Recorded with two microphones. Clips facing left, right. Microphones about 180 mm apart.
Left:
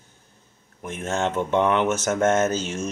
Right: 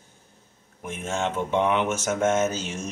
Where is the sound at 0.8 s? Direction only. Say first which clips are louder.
Left 3 dB; 10° right (ahead or behind).